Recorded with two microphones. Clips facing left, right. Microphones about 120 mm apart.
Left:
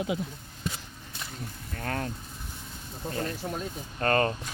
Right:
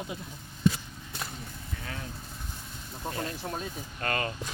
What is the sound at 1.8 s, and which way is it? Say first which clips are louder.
Vehicle: left 10 dB; 55° left (ahead or behind).